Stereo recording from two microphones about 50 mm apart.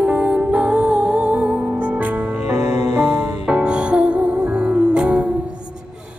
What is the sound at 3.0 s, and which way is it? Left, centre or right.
Music, right.